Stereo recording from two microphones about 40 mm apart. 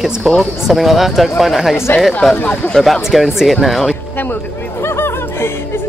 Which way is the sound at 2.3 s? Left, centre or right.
Left.